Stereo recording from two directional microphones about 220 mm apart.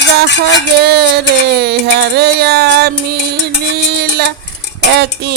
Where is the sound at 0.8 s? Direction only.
50° right (ahead or behind).